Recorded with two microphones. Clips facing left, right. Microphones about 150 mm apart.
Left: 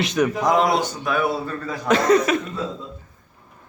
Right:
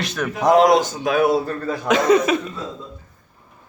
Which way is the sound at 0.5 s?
90° right.